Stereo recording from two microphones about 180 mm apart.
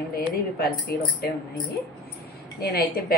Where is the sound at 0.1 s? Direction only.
55° left (ahead or behind).